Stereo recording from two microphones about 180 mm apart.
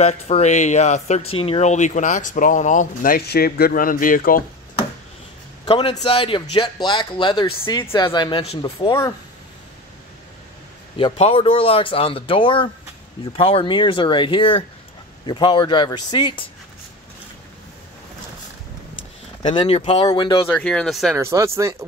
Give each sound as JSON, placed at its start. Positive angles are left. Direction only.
{"t": 0.0, "sound": "speech", "side_deg": 35}
{"t": 5.7, "sound": "speech", "side_deg": 30}
{"t": 11.0, "sound": "speech", "side_deg": 30}
{"t": 19.5, "sound": "speech", "side_deg": 30}
{"t": 20.4, "sound": "speech", "side_deg": 5}
{"t": 21.1, "sound": "speech", "side_deg": -15}